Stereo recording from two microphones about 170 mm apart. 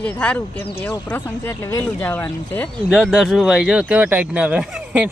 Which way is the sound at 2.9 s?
Centre (ahead or behind).